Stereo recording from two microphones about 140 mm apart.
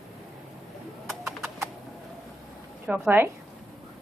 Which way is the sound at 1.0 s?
Centre (ahead or behind).